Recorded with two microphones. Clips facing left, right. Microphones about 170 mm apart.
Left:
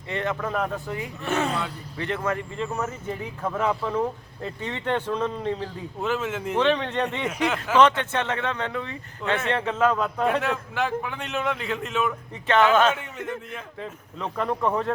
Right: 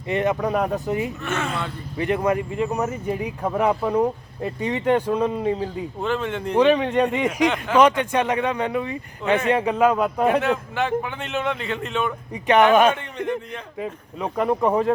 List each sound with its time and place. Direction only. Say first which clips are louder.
0.1 s speech: right 6 dB; 15° right (ahead or behind)
1.2 s speech: left 1 dB; 35° left (ahead or behind)
2.0 s speech: right 6 dB; 15° right (ahead or behind)
6.0 s a man's voice: right 1 dB; 5° left (ahead or behind)
6.6 s speech: right 6 dB; 10° right (ahead or behind)
7.4 s a man's voice: right 2 dB; 5° left (ahead or behind)
7.8 s speech: right 3 dB; 15° right (ahead or behind)
10.2 s a man's voice: right 4 dB; centre (ahead or behind)
12.3 s speech: right 4 dB; 15° right (ahead or behind)
13.0 s a man's voice: right 6 dB; 5° left (ahead or behind)
13.7 s speech: right 9 dB; 10° right (ahead or behind)